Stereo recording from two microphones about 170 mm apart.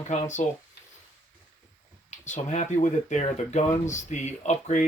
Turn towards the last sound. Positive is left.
turn(degrees=45)  # may be behind; listen again after turning